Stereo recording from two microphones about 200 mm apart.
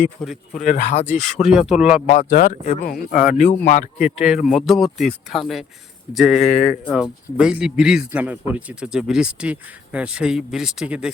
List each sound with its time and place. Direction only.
0.2 s speech: centre (ahead or behind)
0.6 s speech: 35° left (ahead or behind)
1.2 s speech: centre (ahead or behind)
2.0 s speech: 50° left (ahead or behind)
3.2 s speech: centre (ahead or behind)
3.7 s speech: 40° left (ahead or behind)
4.2 s speech: 5° right (ahead or behind)
6.4 s speech: 40° left (ahead or behind)
6.9 s speech: 5° right (ahead or behind)